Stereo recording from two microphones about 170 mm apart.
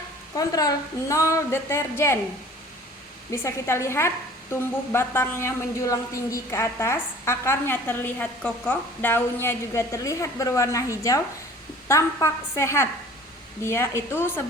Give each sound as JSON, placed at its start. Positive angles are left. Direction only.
{"t": 0.3, "sound": "a woman's voice", "side_deg": 20}
{"t": 3.3, "sound": "a woman's voice", "side_deg": 15}